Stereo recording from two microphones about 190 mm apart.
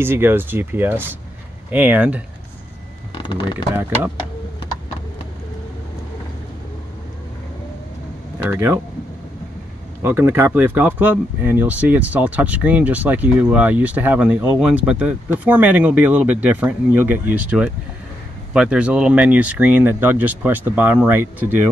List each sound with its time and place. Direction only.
0.0 s speech: 10° right (ahead or behind)
3.2 s speech: 25° left (ahead or behind)
8.5 s speech: 10° right (ahead or behind)
10.0 s speech: 10° right (ahead or behind)